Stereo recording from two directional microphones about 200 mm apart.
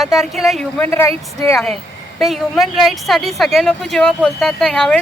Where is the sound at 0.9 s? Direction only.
15° left (ahead or behind).